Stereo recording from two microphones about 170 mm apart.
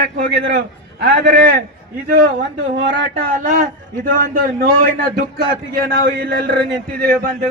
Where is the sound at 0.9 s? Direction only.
80° right.